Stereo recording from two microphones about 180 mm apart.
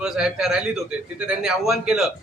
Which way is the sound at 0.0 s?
5° right (ahead or behind).